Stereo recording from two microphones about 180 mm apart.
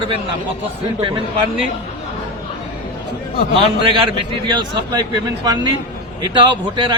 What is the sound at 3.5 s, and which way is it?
A man's voice, 25° right (ahead or behind).